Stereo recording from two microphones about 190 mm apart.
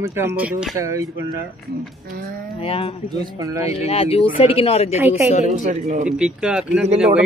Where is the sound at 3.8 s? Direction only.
30° left (ahead or behind).